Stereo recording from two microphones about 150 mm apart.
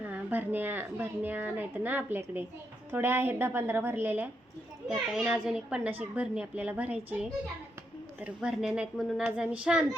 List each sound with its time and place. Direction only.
0.0 s a woman's voice: 10° right (ahead or behind)